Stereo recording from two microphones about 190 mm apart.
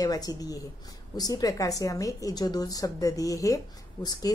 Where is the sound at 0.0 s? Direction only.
20° left (ahead or behind).